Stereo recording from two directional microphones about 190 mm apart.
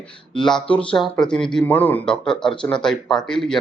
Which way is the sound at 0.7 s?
5° left (ahead or behind).